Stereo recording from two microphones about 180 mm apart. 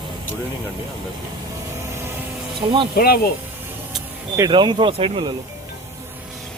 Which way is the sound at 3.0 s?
60° left (ahead or behind).